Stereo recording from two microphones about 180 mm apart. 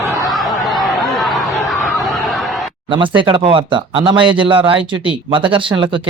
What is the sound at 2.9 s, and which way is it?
Speech, 30° right (ahead or behind).